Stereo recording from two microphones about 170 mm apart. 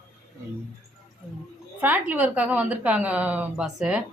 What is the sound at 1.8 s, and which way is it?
A woman's voice, 10° right (ahead or behind).